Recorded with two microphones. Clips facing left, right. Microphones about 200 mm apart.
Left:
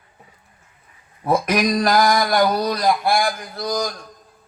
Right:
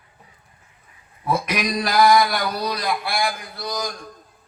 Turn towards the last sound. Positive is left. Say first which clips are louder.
# left 5 dB
turn(degrees=45)  # may be behind; listen again after turning